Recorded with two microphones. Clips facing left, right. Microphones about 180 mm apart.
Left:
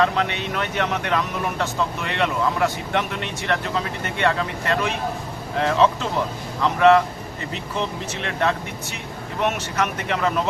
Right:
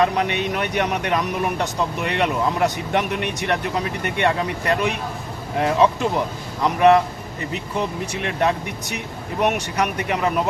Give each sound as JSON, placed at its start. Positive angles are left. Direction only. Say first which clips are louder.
{"t": 0.0, "sound": "speech", "louder": "right 2 dB", "side_deg": -15}